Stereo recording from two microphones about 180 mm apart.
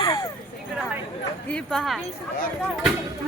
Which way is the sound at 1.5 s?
Centre (ahead or behind).